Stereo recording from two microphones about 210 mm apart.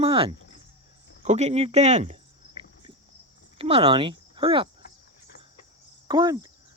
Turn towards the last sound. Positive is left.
turn(degrees=-20)  # may be behind; listen again after turning